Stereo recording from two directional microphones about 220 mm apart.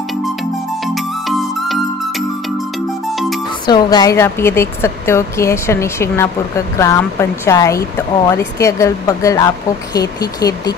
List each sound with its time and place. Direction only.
0.8 s music: centre (ahead or behind)
3.6 s a woman's voice: 20° left (ahead or behind)